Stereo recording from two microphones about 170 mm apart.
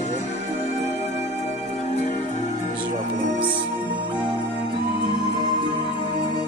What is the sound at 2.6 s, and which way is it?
Music, 50° right (ahead or behind).